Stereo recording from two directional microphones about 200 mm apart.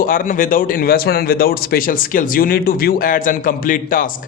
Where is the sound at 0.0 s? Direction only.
45° left (ahead or behind).